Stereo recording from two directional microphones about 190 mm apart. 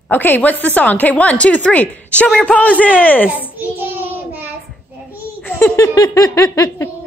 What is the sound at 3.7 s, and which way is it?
Child singing, 10° right (ahead or behind).